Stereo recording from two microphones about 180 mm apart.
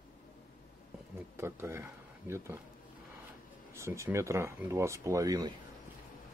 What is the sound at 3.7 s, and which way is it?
Speech, 15° right (ahead or behind).